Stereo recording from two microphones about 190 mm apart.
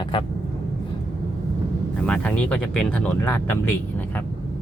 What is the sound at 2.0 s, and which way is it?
Speech, 5° left (ahead or behind).